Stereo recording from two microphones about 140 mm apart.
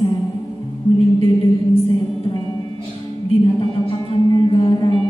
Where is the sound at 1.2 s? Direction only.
40° left (ahead or behind).